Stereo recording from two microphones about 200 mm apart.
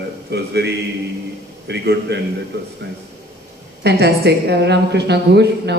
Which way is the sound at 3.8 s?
55° right (ahead or behind).